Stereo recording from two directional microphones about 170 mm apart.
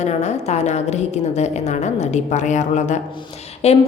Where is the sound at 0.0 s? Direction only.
40° left (ahead or behind).